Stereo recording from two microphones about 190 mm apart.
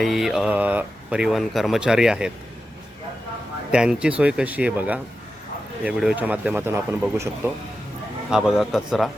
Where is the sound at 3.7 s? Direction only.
5° right (ahead or behind).